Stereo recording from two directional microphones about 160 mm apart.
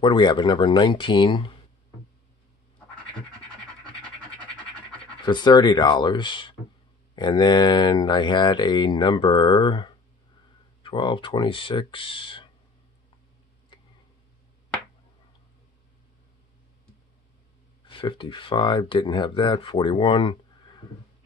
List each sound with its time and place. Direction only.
0.0 s speech: 30° left (ahead or behind)
3.8 s scratch: 5° left (ahead or behind)
5.2 s speech: 30° left (ahead or behind)
13.7 s a sound: 30° left (ahead or behind)
17.8 s speech: 30° left (ahead or behind)